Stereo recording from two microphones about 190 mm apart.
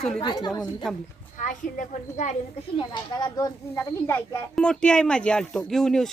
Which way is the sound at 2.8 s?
20° left (ahead or behind).